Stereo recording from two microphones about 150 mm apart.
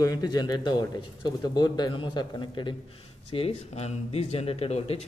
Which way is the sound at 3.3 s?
40° left (ahead or behind).